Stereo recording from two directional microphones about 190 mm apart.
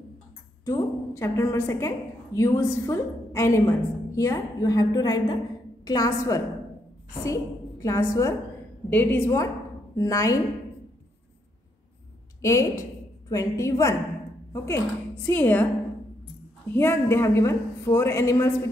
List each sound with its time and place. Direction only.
0.7 s a woman's voice: 15° left (ahead or behind)
7.8 s a woman's voice: 15° left (ahead or behind)
12.4 s a woman's voice: 15° left (ahead or behind)
15.2 s a woman's voice: 10° left (ahead or behind)
16.6 s a woman's voice: 10° left (ahead or behind)